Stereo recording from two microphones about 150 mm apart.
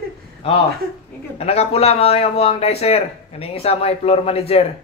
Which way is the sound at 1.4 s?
40° left (ahead or behind).